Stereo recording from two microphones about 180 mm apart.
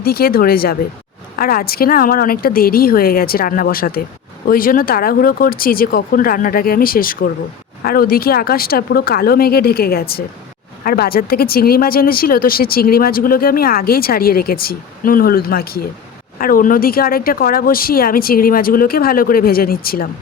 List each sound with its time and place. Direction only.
0.0 s speech: 55° left (ahead or behind)